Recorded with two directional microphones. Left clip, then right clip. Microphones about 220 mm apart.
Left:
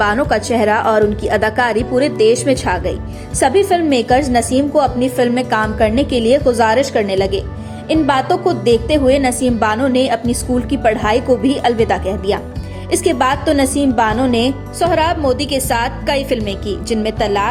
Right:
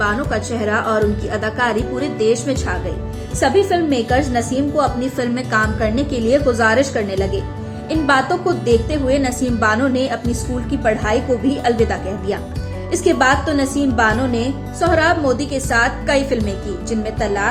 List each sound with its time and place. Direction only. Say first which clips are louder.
0.0 s a woman's voice: left 5 dB; 30° left (ahead or behind)